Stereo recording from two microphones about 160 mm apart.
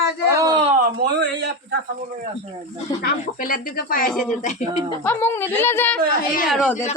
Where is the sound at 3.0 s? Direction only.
65° left (ahead or behind).